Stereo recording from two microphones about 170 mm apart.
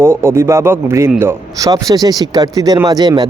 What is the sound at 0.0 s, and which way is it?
A man's voice, 15° right (ahead or behind).